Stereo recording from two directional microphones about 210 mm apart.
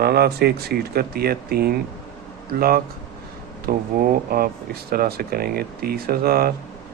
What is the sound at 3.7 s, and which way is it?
Speech, 45° right (ahead or behind).